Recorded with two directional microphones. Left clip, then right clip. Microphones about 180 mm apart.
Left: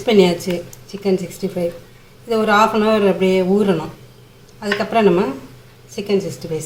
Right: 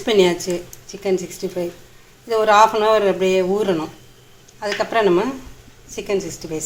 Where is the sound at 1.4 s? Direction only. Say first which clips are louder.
Left 3 dB; 35° right (ahead or behind).